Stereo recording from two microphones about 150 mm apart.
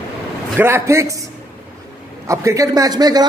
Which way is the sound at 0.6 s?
15° right (ahead or behind).